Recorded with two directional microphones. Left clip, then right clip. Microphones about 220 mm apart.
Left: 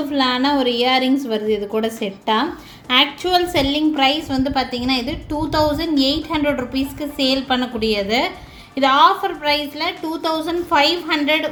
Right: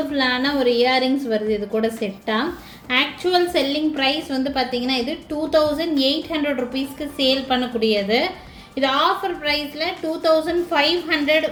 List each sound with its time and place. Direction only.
0.1 s a woman's voice: 30° left (ahead or behind)